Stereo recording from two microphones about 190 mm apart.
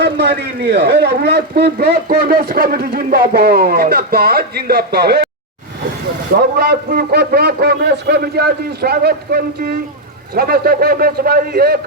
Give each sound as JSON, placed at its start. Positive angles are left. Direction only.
{"t": 0.0, "sound": "a man's voice", "side_deg": -60}
{"t": 6.6, "sound": "a man's voice", "side_deg": -55}